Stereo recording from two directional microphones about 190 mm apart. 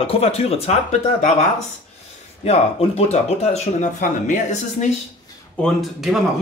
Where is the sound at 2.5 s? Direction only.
30° left (ahead or behind).